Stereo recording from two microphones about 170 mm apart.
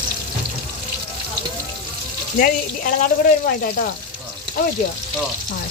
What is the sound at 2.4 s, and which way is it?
Speech, 55° left (ahead or behind).